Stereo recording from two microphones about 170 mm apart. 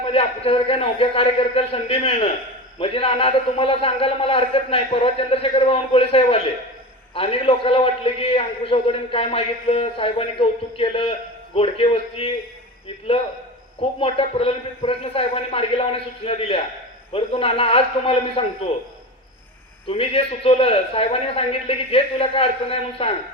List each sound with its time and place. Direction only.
0.0 s a man's voice: 35° left (ahead or behind)
14.0 s a man's voice: 35° left (ahead or behind)
19.9 s a man's voice: 35° left (ahead or behind)